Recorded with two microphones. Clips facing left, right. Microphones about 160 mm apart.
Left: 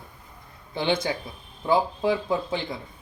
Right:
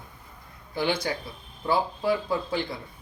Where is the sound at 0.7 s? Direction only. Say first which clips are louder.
Left 2 dB; 25° left (ahead or behind).